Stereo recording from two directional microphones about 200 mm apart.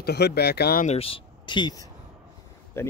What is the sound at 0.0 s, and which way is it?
Speech, 55° left (ahead or behind).